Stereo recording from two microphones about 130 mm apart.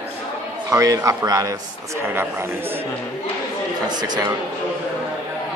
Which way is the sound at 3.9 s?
35° right (ahead or behind).